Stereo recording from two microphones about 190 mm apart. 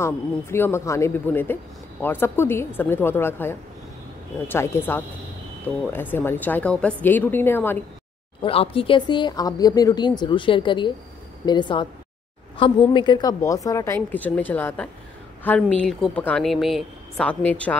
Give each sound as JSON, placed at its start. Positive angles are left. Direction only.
{"t": 0.0, "sound": "speech", "side_deg": 15}
{"t": 8.4, "sound": "speech", "side_deg": 30}